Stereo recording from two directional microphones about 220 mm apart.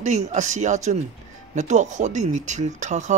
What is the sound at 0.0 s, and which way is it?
Speech, 30° right (ahead or behind).